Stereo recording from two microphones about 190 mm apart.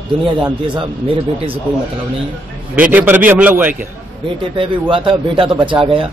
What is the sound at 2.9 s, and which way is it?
Speech, 10° right (ahead or behind).